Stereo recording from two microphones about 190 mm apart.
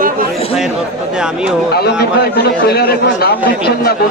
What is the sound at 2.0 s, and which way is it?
A man's voice, 55° left (ahead or behind).